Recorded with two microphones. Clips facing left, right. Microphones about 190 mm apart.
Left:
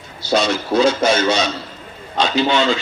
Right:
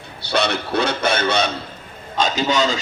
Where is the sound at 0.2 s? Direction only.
65° right (ahead or behind).